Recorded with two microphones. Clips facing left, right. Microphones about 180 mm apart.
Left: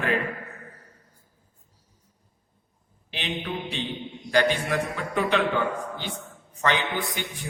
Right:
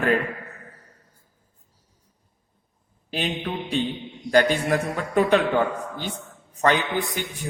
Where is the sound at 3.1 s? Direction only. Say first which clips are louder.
Right 4 dB; 45° right (ahead or behind).